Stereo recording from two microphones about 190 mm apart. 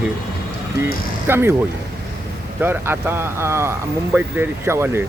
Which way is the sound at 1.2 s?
10° right (ahead or behind).